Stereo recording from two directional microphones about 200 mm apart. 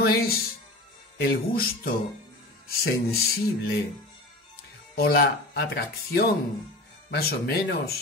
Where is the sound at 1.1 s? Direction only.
50° left (ahead or behind).